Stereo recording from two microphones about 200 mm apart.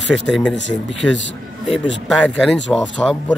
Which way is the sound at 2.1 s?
Centre (ahead or behind).